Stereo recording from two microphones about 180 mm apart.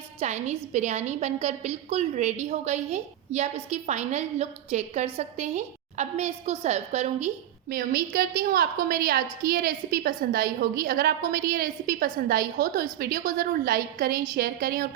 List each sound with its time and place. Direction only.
0.2 s a woman's voice: 35° right (ahead or behind)
7.7 s a woman's voice: 55° right (ahead or behind)